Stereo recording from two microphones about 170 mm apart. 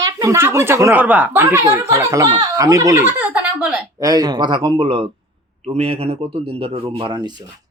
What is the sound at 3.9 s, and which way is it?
Speech, 20° right (ahead or behind).